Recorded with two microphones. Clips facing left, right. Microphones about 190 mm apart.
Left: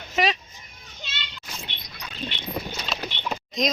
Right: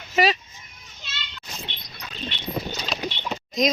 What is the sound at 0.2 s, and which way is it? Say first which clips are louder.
Speech: right 3 dB; 5° right (ahead or behind).